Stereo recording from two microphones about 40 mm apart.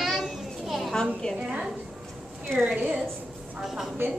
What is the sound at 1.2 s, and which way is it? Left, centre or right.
Speech, centre.